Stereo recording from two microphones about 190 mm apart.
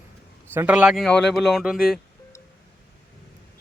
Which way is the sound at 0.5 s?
10° right (ahead or behind).